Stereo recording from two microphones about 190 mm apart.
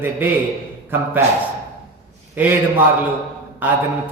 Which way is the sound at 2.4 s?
10° right (ahead or behind).